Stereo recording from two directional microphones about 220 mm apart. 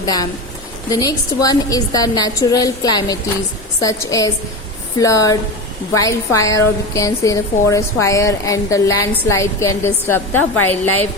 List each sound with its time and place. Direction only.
0.0 s a woman's voice: 15° left (ahead or behind)